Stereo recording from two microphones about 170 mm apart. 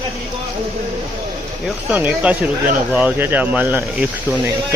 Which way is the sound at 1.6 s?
10° right (ahead or behind).